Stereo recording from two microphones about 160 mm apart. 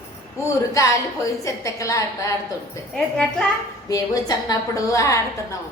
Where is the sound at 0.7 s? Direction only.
20° left (ahead or behind).